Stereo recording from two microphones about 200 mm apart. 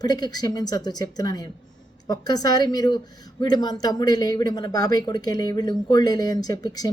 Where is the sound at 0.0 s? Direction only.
20° left (ahead or behind).